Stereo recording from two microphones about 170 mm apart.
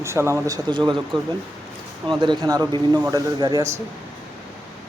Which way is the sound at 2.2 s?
25° right (ahead or behind).